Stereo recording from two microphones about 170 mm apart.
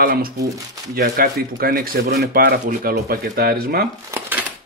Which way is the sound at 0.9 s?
60° right (ahead or behind).